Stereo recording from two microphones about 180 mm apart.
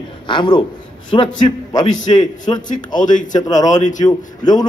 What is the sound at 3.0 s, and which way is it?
Speech, 45° left (ahead or behind).